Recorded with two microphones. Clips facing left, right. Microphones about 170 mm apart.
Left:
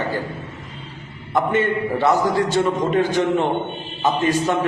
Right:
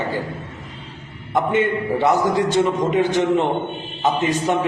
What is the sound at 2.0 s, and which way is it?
A man's voice, 20° right (ahead or behind).